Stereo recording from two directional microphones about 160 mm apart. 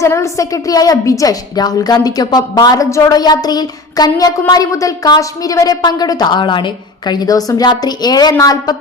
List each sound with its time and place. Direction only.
0.0 s a woman's voice: 20° left (ahead or behind)